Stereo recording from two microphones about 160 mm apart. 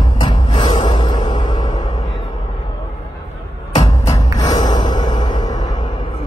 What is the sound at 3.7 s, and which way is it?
Music, 35° left (ahead or behind).